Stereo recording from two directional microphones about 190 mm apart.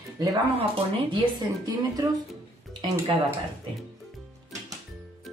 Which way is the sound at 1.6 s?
20° right (ahead or behind).